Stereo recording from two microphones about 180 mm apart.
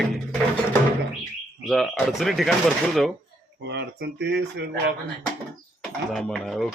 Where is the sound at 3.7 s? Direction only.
70° right (ahead or behind).